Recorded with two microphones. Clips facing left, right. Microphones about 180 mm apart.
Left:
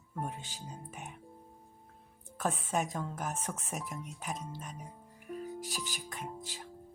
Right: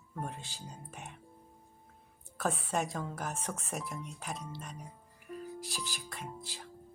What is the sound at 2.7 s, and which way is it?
Speech, 5° left (ahead or behind).